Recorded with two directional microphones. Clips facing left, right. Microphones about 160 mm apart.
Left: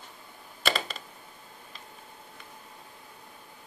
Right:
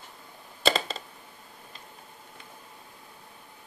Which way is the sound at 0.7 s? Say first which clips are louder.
Right 4 dB; 25° right (ahead or behind).